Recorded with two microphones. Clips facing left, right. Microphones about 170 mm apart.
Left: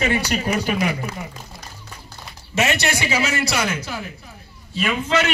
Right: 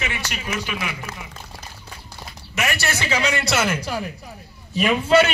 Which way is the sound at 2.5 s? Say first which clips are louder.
Left 4 dB; 20° left (ahead or behind).